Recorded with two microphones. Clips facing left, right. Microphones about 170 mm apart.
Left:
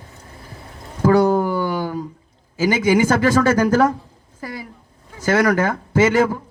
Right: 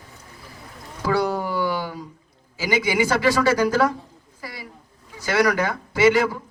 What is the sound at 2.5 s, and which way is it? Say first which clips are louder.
A woman's voice: left 5 dB; 45° left (ahead or behind).